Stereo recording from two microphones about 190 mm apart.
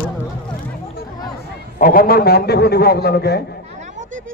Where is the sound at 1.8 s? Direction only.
50° left (ahead or behind).